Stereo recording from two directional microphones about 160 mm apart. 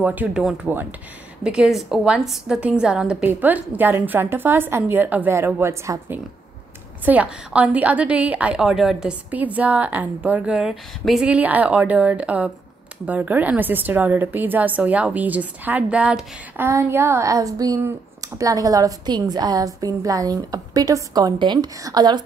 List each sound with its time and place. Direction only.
0.0 s speech: 10° right (ahead or behind); by 22.2 s 25° right (ahead or behind)